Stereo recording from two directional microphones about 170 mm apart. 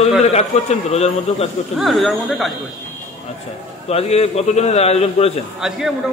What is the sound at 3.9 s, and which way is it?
A man's voice, 35° left (ahead or behind).